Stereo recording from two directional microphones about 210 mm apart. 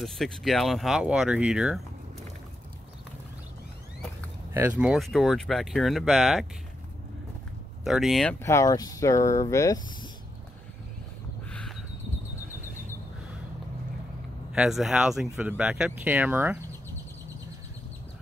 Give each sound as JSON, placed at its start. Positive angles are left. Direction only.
{"t": 0.0, "sound": "speech", "side_deg": 0}
{"t": 4.6, "sound": "speech", "side_deg": -5}
{"t": 7.8, "sound": "speech", "side_deg": 0}
{"t": 11.5, "sound": "a sound", "side_deg": 5}
{"t": 14.5, "sound": "speech", "side_deg": 0}